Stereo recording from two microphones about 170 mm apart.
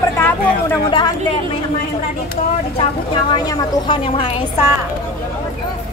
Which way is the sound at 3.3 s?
25° left (ahead or behind).